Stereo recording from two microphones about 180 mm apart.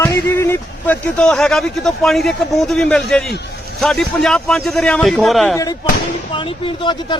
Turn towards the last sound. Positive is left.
turn(degrees=25)  # may be behind; listen again after turning